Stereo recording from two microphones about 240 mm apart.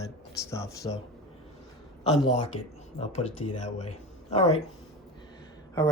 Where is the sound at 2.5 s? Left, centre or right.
Left.